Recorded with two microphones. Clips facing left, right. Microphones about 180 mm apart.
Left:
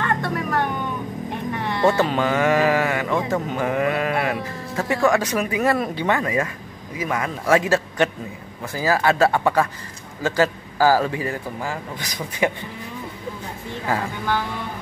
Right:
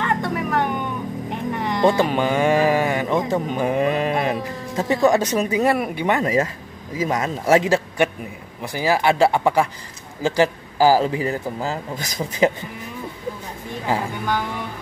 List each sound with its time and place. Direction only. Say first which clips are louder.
0.0 s music: right 1 dB; 15° right (ahead or behind)
1.3 s speech: right 2 dB; 15° right (ahead or behind)
13.8 s speech: right 1 dB; 15° right (ahead or behind)